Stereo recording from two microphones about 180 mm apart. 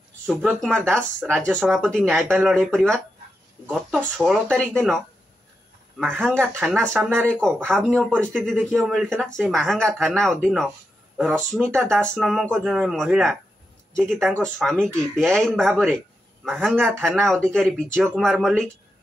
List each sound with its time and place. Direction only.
0.3 s speech: centre (ahead or behind)